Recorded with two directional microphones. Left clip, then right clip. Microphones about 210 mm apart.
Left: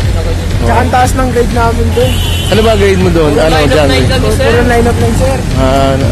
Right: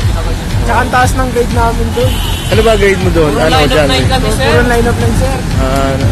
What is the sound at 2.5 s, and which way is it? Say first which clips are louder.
Speech: even; 30° left (ahead or behind).